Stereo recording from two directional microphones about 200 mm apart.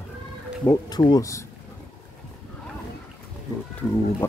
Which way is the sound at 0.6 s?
20° left (ahead or behind).